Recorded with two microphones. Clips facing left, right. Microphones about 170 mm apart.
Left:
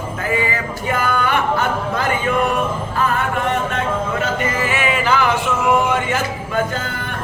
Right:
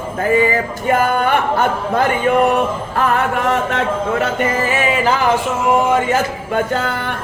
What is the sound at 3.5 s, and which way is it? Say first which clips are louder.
Speech: right 3 dB; 85° right.